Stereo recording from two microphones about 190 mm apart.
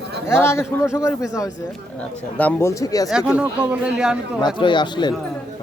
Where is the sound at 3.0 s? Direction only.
5° right (ahead or behind).